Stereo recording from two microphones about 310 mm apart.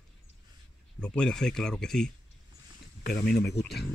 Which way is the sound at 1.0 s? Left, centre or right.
Centre.